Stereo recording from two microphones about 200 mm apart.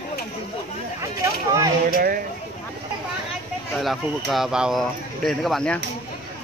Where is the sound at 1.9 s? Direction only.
45° right (ahead or behind).